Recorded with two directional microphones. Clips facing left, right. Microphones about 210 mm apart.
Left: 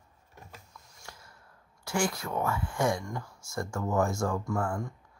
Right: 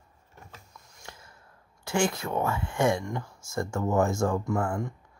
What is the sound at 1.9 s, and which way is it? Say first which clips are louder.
Speech: right 3 dB; 25° right (ahead or behind).